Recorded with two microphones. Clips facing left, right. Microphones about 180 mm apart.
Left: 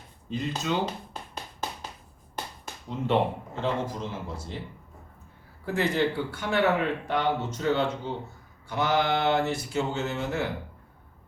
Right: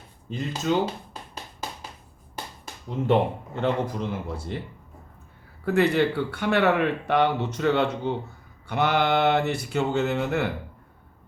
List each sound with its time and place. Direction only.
0.3 s speech: 50° right (ahead or behind)
3.1 s speech: 60° right (ahead or behind)
5.6 s speech: 65° right (ahead or behind)